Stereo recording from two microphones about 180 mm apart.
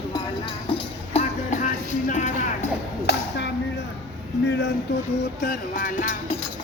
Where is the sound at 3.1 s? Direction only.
70° left (ahead or behind).